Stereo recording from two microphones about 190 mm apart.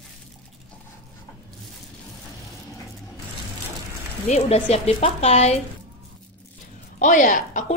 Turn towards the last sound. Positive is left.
turn(degrees=40)  # may be behind; listen again after turning